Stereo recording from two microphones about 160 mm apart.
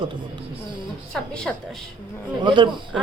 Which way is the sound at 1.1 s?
5° left (ahead or behind).